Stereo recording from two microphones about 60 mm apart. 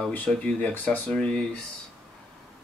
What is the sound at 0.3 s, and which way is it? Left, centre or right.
Speech, centre.